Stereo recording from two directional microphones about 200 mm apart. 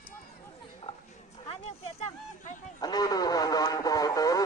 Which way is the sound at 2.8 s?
20° left (ahead or behind).